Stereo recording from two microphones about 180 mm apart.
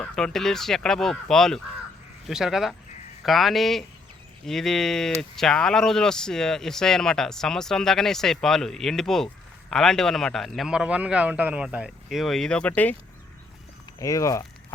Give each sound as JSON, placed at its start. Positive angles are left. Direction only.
{"t": 0.0, "sound": "speech", "side_deg": 5}
{"t": 14.0, "sound": "speech", "side_deg": 20}